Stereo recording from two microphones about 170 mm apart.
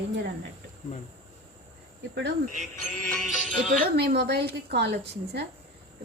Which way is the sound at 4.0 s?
70° right (ahead or behind).